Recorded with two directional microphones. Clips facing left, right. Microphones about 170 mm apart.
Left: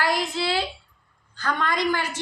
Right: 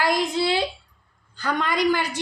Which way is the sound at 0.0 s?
15° right (ahead or behind).